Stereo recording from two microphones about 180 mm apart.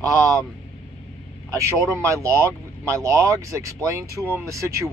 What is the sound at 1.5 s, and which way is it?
Speech, 15° right (ahead or behind).